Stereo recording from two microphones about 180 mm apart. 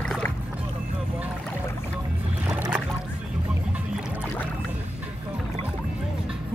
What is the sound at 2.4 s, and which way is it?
Boat, 15° right (ahead or behind).